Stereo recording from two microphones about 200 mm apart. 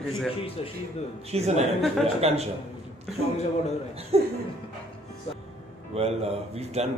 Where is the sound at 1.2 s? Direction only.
30° right (ahead or behind).